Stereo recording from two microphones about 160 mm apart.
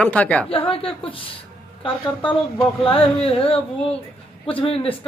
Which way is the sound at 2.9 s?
35° left (ahead or behind).